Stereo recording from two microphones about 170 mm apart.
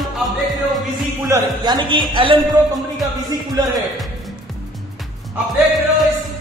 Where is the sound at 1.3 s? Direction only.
20° right (ahead or behind).